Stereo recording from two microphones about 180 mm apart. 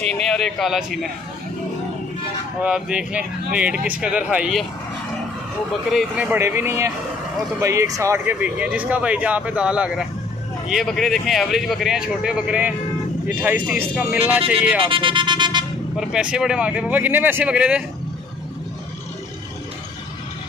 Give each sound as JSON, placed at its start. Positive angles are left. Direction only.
{"t": 0.1, "sound": "a man's voice", "side_deg": 5}
{"t": 2.6, "sound": "speech", "side_deg": -5}
{"t": 5.9, "sound": "a man's voice", "side_deg": -5}
{"t": 14.9, "sound": "vehicle", "side_deg": -30}
{"t": 16.0, "sound": "speech", "side_deg": -5}